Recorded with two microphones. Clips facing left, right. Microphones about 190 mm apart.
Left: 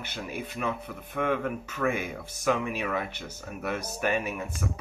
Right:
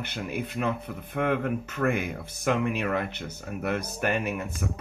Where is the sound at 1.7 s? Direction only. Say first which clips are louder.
Right 1 dB; 55° right (ahead or behind).